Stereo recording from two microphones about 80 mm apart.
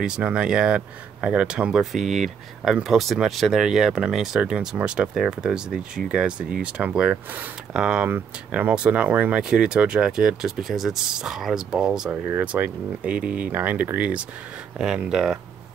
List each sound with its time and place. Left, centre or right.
0.0 s speech: centre
9.4 s speech: centre
12.1 s speech: right
14.8 s speech: centre